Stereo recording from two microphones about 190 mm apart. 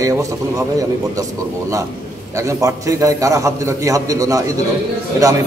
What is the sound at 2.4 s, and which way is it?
A man's voice, 15° right (ahead or behind).